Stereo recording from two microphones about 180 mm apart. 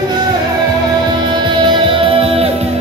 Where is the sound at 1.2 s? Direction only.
25° right (ahead or behind).